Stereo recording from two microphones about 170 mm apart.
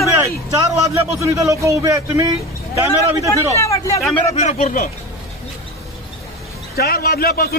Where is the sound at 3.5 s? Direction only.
15° left (ahead or behind).